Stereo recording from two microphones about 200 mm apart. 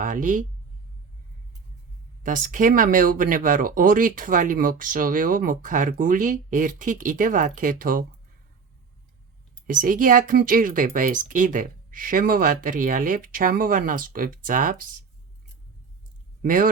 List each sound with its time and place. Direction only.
0.0 s speech: 40° right (ahead or behind)
2.2 s speech: 40° right (ahead or behind)
9.6 s speech: 45° right (ahead or behind)
16.4 s speech: 45° right (ahead or behind)